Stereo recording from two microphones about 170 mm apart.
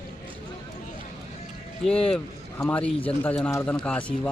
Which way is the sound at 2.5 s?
10° left (ahead or behind).